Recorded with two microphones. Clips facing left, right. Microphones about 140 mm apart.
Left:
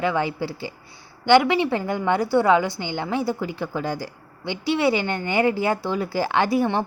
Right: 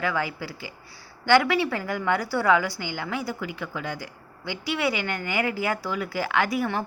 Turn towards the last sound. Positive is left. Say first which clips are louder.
# left 5 dB
turn(degrees=30)  # may be behind; listen again after turning